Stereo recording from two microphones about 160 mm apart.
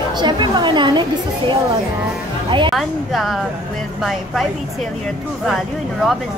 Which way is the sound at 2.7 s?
Centre (ahead or behind).